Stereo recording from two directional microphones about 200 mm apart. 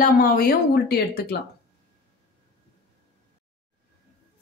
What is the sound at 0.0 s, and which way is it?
Speech, 45° left (ahead or behind).